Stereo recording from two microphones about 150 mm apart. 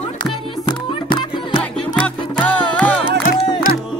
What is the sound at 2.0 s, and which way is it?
Music, 10° left (ahead or behind).